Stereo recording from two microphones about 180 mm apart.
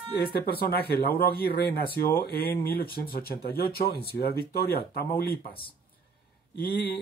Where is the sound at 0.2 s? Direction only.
60° left (ahead or behind).